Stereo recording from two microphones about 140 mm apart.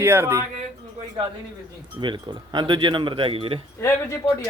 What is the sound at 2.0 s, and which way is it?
Speech, 35° right (ahead or behind).